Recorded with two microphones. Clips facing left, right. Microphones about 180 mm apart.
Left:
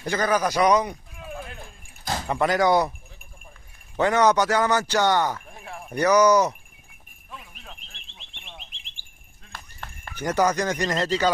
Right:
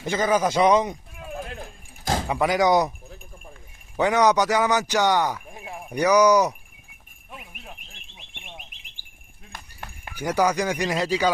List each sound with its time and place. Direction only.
0.0 s a man's voice: 20° right (ahead or behind)
1.5 s keys jangling: 45° right (ahead or behind)
2.2 s speech: 10° right (ahead or behind)
3.9 s a man's voice: 15° right (ahead or behind)
7.2 s a sound: 15° right (ahead or behind)
9.0 s bird: 45° right (ahead or behind)
9.5 s speech: 15° right (ahead or behind)